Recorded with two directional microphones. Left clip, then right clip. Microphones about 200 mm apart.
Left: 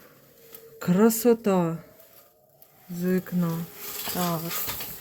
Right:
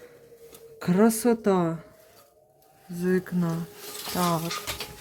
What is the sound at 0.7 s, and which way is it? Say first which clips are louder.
Speech: even; 5° right (ahead or behind).